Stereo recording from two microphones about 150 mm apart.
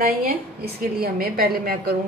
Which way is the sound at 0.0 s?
90° right.